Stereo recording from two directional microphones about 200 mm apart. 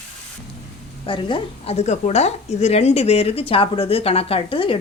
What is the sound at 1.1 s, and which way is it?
A woman's voice, 25° left (ahead or behind).